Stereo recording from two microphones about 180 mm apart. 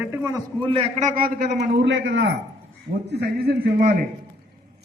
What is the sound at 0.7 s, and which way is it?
Speech, 30° right (ahead or behind).